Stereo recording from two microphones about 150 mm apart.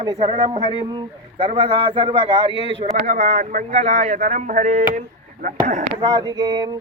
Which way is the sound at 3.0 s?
55° right (ahead or behind).